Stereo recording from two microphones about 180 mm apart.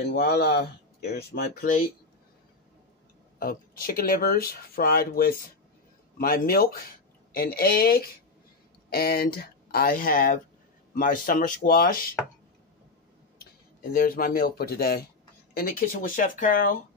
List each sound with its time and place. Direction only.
0.1 s speech: 65° left (ahead or behind)
3.3 s speech: 55° left (ahead or behind)
13.8 s speech: 55° left (ahead or behind)